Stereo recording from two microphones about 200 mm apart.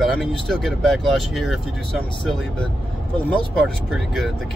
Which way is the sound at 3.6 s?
Centre (ahead or behind).